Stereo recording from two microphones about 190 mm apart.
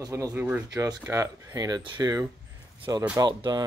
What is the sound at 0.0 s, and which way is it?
Speech, 15° right (ahead or behind).